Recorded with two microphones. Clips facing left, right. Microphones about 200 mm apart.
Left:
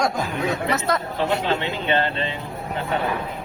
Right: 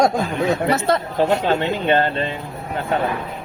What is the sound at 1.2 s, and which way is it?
A man's voice, 45° right (ahead or behind).